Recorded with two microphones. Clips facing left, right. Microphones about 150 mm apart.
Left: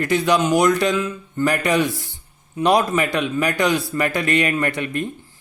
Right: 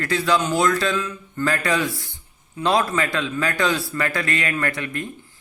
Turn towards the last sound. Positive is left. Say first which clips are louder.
# left 4 dB
turn(degrees=20)  # may be behind; listen again after turning